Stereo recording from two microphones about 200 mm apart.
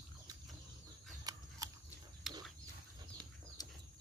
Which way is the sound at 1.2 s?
20° right (ahead or behind).